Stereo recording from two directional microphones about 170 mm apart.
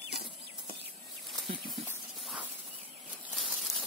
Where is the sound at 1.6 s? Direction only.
Centre (ahead or behind).